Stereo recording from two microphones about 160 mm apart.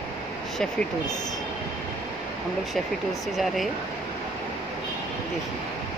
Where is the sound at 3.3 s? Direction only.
Centre (ahead or behind).